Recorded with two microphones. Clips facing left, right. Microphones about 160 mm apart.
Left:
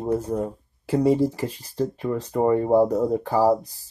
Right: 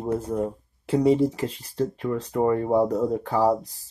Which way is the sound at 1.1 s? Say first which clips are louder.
Even; 15° left (ahead or behind).